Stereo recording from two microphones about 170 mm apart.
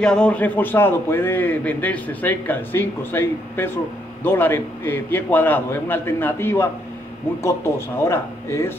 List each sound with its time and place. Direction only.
0.0 s a man's voice: 5° left (ahead or behind)